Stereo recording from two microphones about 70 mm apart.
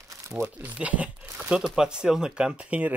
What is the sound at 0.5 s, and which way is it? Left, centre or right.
Speech, right.